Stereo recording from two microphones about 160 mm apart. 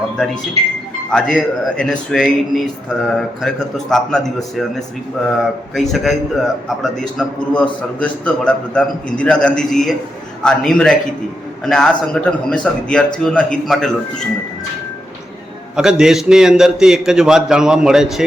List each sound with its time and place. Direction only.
1.1 s a man's voice: 5° right (ahead or behind)
15.7 s speech: 5° right (ahead or behind)